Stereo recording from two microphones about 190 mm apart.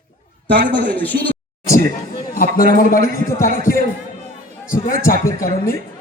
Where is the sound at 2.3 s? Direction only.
45° left (ahead or behind).